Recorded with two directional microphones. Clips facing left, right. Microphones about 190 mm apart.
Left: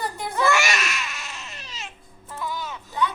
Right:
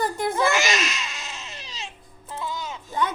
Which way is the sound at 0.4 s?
20° right (ahead or behind).